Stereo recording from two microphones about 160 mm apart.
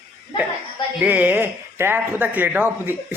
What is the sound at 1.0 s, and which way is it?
Speech, 10° right (ahead or behind).